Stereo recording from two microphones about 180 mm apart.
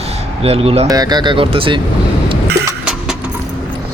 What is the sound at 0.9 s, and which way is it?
Speech, 20° right (ahead or behind).